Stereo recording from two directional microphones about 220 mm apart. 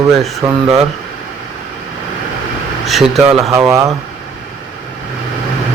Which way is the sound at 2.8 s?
Centre (ahead or behind).